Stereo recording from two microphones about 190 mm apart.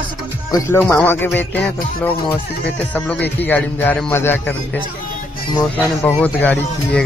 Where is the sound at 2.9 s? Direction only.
10° left (ahead or behind).